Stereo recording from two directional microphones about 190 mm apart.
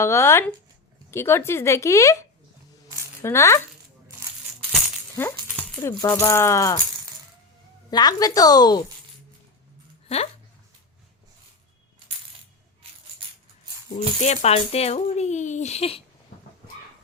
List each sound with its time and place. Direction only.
0.0 s speech: 15° left (ahead or behind)
3.2 s speech: 15° left (ahead or behind)
5.2 s speech: 10° left (ahead or behind)
5.5 s dog: 5° left (ahead or behind)
6.0 s speech: 20° left (ahead or behind)
7.9 s a woman's voice: 20° left (ahead or behind)
14.2 s speech: 35° left (ahead or behind)